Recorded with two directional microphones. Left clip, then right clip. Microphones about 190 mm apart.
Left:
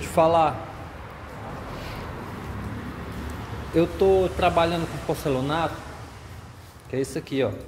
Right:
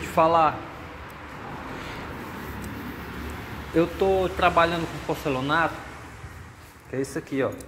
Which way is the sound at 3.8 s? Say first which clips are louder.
Left 2 dB; 25° left (ahead or behind).